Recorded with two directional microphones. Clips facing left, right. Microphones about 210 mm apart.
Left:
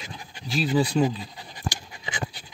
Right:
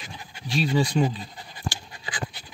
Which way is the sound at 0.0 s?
Centre (ahead or behind).